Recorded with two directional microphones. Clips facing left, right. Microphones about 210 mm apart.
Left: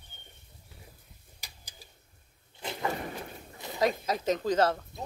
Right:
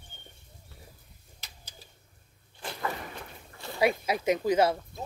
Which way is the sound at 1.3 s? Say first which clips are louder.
Right 1 dB; 15° left (ahead or behind).